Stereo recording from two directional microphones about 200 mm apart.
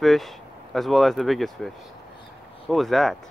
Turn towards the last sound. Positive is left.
turn(degrees=0)  # may be behind; listen again after turning